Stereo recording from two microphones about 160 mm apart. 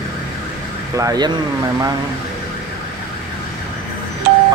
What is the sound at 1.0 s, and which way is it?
Speech, 25° right (ahead or behind).